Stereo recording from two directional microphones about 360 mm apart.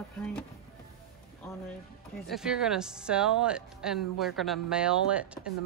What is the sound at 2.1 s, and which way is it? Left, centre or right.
Speech, centre.